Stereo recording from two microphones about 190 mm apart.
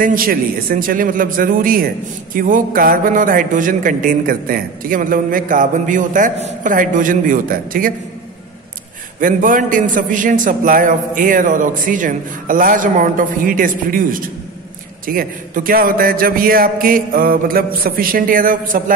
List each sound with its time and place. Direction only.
0.0 s a man's voice: 50° right (ahead or behind)
9.2 s a man's voice: 45° right (ahead or behind)